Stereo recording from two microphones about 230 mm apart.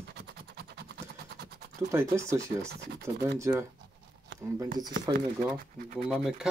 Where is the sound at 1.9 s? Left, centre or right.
Centre.